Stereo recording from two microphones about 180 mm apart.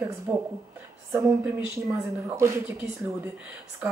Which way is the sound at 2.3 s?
15° right (ahead or behind).